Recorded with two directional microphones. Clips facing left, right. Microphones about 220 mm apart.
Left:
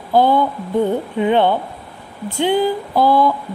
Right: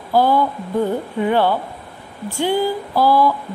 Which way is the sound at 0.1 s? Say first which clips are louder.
Left 2 dB; 20° left (ahead or behind).